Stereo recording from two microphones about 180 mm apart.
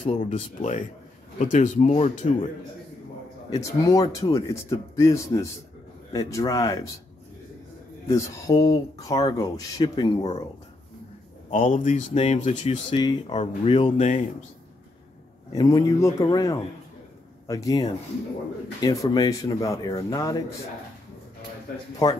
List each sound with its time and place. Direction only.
0.0 s speech: 45° left (ahead or behind)
3.4 s speech: 20° left (ahead or behind)
8.1 s speech: 20° left (ahead or behind)
11.5 s speech: 40° left (ahead or behind)
15.5 s speech: 20° left (ahead or behind)